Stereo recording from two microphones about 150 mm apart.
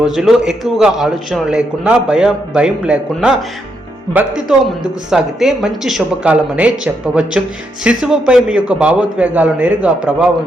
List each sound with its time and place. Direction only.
0.0 s a man's voice: 5° right (ahead or behind)